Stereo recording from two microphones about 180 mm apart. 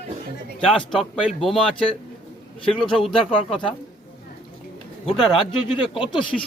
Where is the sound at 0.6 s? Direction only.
5° left (ahead or behind).